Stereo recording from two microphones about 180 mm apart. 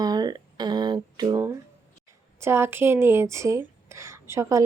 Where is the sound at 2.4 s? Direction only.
15° right (ahead or behind).